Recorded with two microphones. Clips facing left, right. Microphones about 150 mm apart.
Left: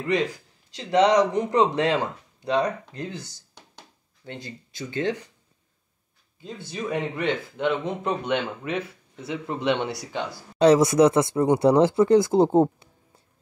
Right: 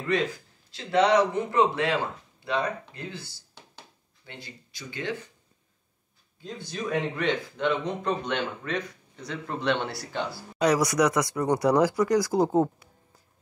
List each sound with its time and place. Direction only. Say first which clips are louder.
0.7 s speech: left 3 dB; 15° left (ahead or behind)
6.4 s speech: left 2 dB; 5° left (ahead or behind)
10.6 s speech: left 6 dB; 25° left (ahead or behind)